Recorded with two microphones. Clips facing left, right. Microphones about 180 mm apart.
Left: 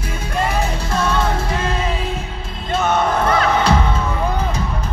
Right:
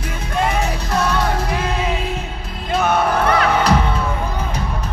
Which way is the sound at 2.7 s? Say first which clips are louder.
Even; 10° right (ahead or behind).